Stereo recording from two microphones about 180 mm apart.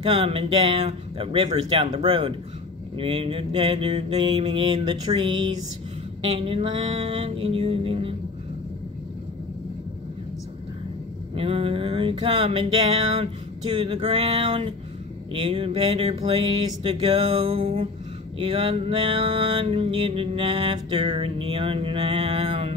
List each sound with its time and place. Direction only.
0.0 s mantra: 30° right (ahead or behind)
11.3 s mantra: 30° right (ahead or behind)